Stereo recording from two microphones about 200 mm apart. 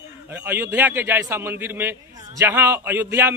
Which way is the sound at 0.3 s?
10° right (ahead or behind).